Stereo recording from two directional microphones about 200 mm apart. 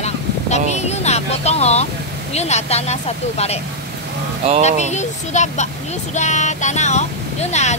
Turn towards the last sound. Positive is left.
turn(degrees=35)  # may be behind; listen again after turning